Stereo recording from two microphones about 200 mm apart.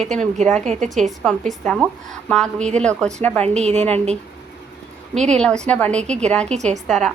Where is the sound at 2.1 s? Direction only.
Centre (ahead or behind).